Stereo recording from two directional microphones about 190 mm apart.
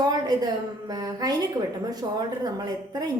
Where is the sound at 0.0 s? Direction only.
20° right (ahead or behind).